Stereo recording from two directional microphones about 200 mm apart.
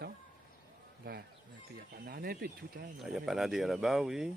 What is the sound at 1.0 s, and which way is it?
Speech, 50° right (ahead or behind).